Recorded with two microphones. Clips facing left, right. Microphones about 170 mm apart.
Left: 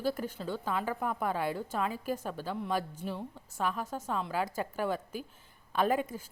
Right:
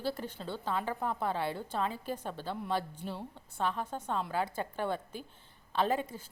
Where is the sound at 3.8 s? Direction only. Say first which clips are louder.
Even; 5° left (ahead or behind).